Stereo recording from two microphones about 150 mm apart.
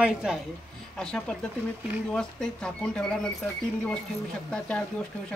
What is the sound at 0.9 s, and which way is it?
Speech, 5° left (ahead or behind).